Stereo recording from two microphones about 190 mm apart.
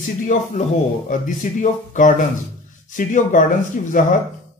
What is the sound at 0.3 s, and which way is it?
A man's voice, 40° left (ahead or behind).